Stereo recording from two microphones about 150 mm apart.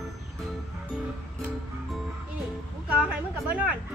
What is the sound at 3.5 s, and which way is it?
Chatter, 10° right (ahead or behind).